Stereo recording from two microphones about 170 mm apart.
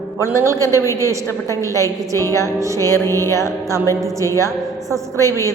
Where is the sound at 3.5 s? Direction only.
15° right (ahead or behind).